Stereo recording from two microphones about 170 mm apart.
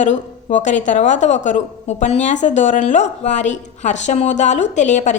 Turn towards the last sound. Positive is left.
turn(degrees=45)  # may be behind; listen again after turning